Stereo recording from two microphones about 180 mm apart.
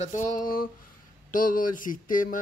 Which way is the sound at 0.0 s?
45° left (ahead or behind).